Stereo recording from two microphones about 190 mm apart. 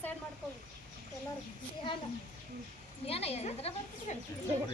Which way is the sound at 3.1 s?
30° left (ahead or behind).